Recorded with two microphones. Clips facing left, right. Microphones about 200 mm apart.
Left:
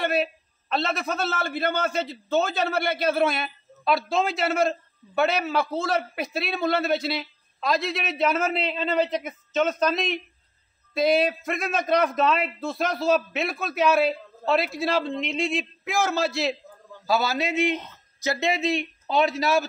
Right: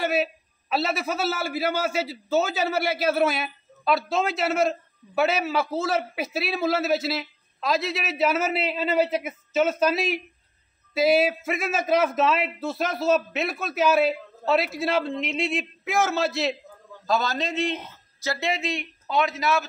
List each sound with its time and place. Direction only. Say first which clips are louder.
0.0 s a man's voice: even; 5° right (ahead or behind)
18.2 s speech: left 3 dB; 20° left (ahead or behind)